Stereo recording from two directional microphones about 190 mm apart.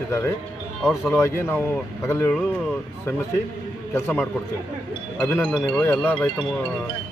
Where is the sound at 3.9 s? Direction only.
10° left (ahead or behind).